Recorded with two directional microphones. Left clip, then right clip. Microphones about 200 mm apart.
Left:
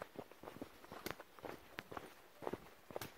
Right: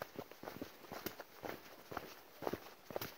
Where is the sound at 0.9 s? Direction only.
50° right (ahead or behind).